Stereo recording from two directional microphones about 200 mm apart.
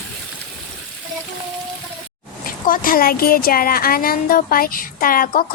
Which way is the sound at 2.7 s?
45° left (ahead or behind).